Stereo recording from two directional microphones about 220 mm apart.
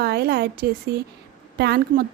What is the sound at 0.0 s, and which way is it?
A woman's voice, 45° right (ahead or behind).